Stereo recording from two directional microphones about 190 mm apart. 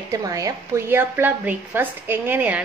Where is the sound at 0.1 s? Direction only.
20° right (ahead or behind).